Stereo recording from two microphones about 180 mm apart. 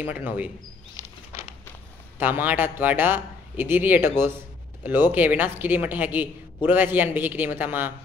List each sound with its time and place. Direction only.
0.0 s a man's voice: 10° right (ahead or behind)
2.1 s a man's voice: 10° right (ahead or behind)
4.2 s a sound: 10° right (ahead or behind)
5.1 s a man's voice: 10° right (ahead or behind)